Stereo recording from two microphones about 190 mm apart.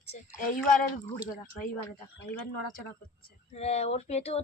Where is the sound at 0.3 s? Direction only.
45° left (ahead or behind).